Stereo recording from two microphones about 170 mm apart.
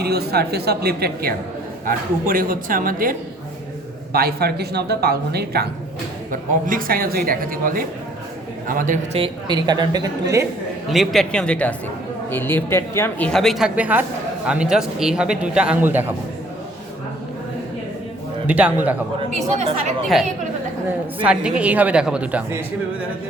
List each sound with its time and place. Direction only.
0.0 s speech: 70° right (ahead or behind)
1.9 s speech: 55° right (ahead or behind)
6.7 s a man's voice: 55° right (ahead or behind)
9.1 s a woman's voice: 30° right (ahead or behind)
10.8 s a man's voice: centre (ahead or behind)
18.4 s speech: 10° right (ahead or behind)
20.1 s a man's voice: centre (ahead or behind)